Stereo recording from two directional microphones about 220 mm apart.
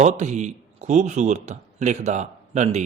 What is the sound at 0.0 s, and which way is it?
A man's voice, 30° right (ahead or behind).